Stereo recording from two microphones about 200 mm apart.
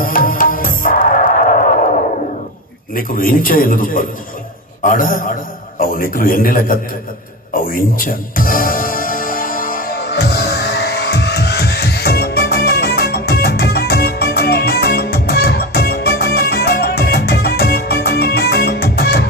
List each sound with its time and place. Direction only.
0.0 s music: 45° left (ahead or behind)
2.9 s a man's voice: 45° left (ahead or behind)
7.5 s music: 45° left (ahead or behind)